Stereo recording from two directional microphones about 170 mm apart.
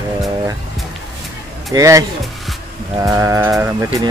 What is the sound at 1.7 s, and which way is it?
Speech, 20° right (ahead or behind).